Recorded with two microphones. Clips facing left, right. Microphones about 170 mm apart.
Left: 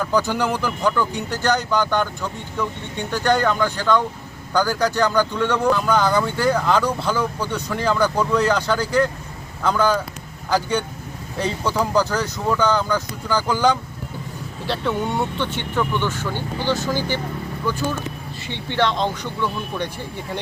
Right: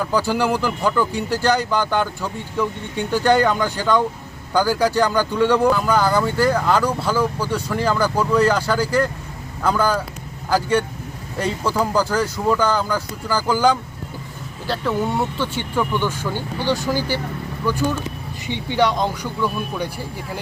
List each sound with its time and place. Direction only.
0.0 s speech: 10° right (ahead or behind)
18.4 s speech: 15° right (ahead or behind)